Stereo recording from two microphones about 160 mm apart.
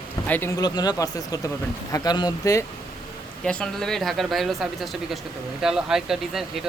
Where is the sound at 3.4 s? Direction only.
5° left (ahead or behind).